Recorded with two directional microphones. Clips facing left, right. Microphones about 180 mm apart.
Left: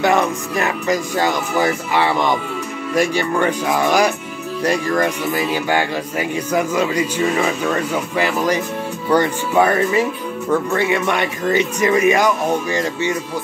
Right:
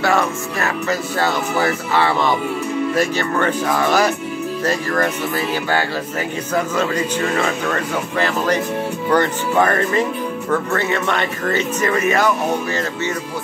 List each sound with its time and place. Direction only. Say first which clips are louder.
0.0 s speech: left 2 dB; 20° left (ahead or behind)